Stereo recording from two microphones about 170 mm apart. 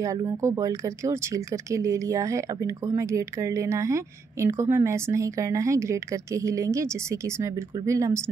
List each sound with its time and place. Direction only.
0.0 s speech: 20° right (ahead or behind)